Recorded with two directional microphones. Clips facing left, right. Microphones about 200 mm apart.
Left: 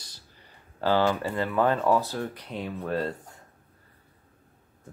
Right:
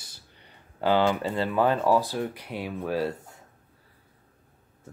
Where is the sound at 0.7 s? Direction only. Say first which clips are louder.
Right 1 dB; 15° right (ahead or behind).